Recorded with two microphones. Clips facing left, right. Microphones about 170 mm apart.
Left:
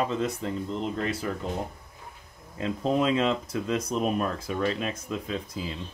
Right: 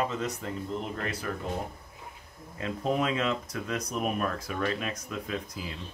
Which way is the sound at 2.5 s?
25° left (ahead or behind).